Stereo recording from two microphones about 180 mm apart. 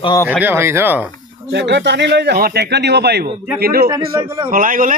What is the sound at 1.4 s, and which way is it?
A man's voice, 70° right (ahead or behind).